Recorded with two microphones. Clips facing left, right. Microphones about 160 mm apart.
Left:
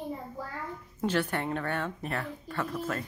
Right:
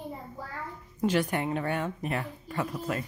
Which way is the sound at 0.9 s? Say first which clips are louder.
Right 2 dB; 10° right (ahead or behind).